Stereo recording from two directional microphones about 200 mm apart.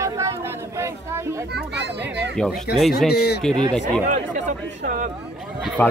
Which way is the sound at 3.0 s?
55° left (ahead or behind).